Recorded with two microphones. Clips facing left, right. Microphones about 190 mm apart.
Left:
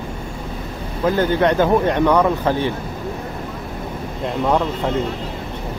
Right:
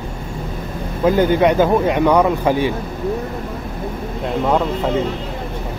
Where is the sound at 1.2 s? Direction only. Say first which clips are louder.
Right 2 dB; 10° right (ahead or behind).